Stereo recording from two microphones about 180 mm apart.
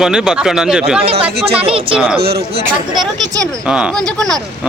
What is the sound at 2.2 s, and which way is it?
Speech, 60° right (ahead or behind).